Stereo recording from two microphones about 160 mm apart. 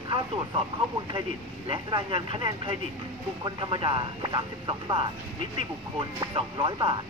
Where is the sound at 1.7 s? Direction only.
30° right (ahead or behind).